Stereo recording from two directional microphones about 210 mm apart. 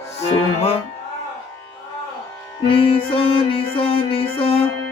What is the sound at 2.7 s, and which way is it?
Music, 25° left (ahead or behind).